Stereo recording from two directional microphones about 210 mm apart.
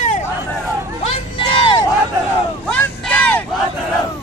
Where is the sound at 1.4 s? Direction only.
25° left (ahead or behind).